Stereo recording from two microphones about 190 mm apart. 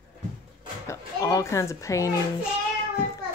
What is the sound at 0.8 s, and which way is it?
Speech, 15° left (ahead or behind).